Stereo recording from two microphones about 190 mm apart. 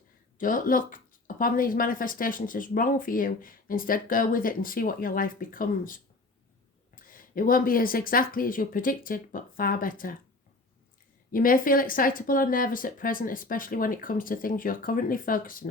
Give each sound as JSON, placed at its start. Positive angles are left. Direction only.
{"t": 0.3, "sound": "speech", "side_deg": 45}
{"t": 11.3, "sound": "speech", "side_deg": 50}